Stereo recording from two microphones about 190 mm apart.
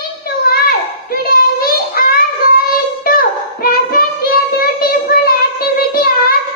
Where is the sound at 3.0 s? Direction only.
50° left (ahead or behind).